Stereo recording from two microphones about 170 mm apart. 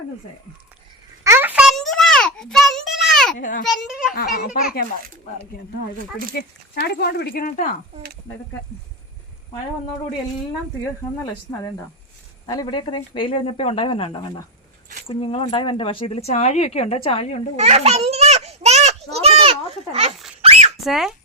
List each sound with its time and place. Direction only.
1.2 s a sound: 15° right (ahead or behind)
3.3 s a child's voice: 50° left (ahead or behind)
3.7 s a child's voice: centre (ahead or behind)
4.1 s speech: 60° left (ahead or behind)
6.3 s speech: 70° left (ahead or behind)
8.3 s speech: 20° left (ahead or behind)
11.5 s speech: 20° left (ahead or behind); by 17.4 s 35° left (ahead or behind)
17.6 s children playing: 40° right (ahead or behind)
20.4 s a sound: 40° right (ahead or behind)
20.8 s a child's voice: centre (ahead or behind)